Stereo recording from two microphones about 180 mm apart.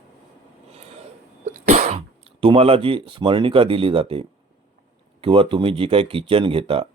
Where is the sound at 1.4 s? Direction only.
45° right (ahead or behind).